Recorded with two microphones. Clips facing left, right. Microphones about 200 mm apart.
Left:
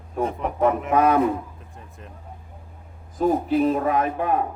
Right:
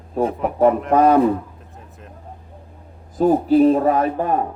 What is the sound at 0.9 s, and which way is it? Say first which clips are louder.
Speech: right 4 dB; 35° right (ahead or behind).